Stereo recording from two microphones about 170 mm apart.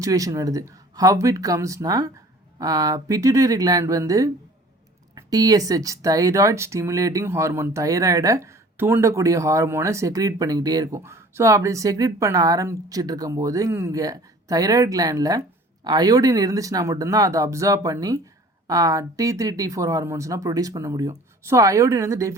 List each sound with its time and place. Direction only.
0.0 s speech: 20° right (ahead or behind)